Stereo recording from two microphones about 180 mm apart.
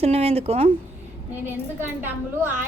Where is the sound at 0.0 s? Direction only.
35° right (ahead or behind).